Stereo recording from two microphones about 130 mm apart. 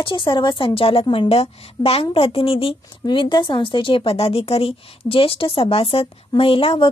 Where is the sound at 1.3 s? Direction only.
50° left (ahead or behind).